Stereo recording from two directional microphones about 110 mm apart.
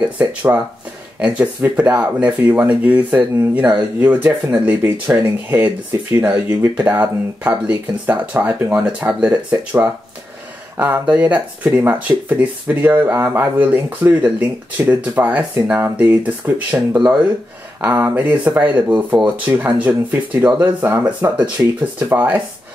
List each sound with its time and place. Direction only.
0.2 s speech: 15° right (ahead or behind)